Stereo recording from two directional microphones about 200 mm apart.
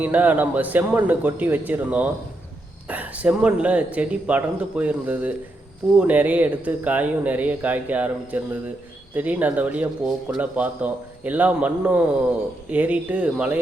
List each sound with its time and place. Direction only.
0.0 s speech: 10° right (ahead or behind)